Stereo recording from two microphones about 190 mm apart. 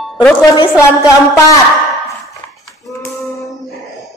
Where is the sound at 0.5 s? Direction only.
20° left (ahead or behind).